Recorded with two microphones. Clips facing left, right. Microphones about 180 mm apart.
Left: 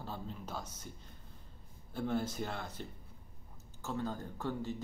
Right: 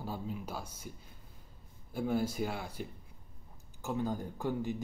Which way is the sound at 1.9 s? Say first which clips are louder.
Right 3 dB; 10° right (ahead or behind).